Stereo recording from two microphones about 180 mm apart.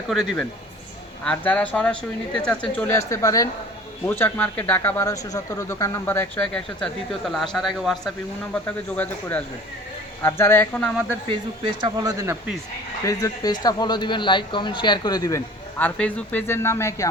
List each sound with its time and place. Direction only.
0.1 s a man's voice: centre (ahead or behind)
11.3 s speech: 25° right (ahead or behind)
13.1 s a man's voice: 20° left (ahead or behind)
15.8 s speech: 10° left (ahead or behind)